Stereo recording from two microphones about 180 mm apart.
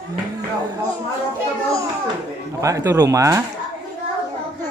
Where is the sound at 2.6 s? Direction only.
15° right (ahead or behind).